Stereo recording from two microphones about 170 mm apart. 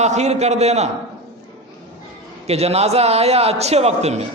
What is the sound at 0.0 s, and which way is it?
Speech, 40° right (ahead or behind).